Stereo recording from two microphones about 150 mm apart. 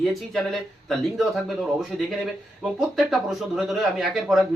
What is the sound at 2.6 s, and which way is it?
A man's voice, centre (ahead or behind).